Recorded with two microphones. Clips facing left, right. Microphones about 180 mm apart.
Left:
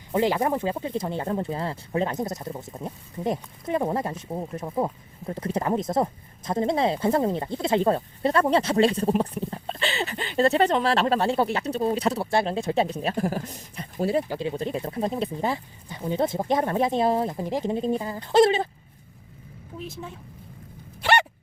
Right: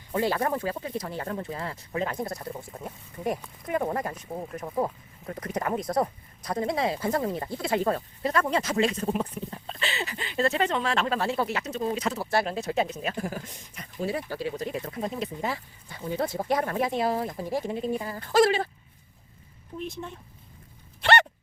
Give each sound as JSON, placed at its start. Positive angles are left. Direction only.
{"t": 0.1, "sound": "speech", "side_deg": 20}
{"t": 4.6, "sound": "speech", "side_deg": 15}
{"t": 5.2, "sound": "speech", "side_deg": 30}
{"t": 14.3, "sound": "speech", "side_deg": 25}
{"t": 17.7, "sound": "speech", "side_deg": 30}
{"t": 19.9, "sound": "a woman's voice", "side_deg": 5}
{"t": 21.0, "sound": "a sound", "side_deg": 10}